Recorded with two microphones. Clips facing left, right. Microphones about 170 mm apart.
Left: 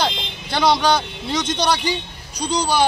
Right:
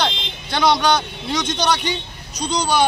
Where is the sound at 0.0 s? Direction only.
5° left (ahead or behind).